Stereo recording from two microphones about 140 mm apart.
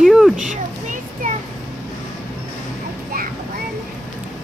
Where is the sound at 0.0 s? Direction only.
Centre (ahead or behind).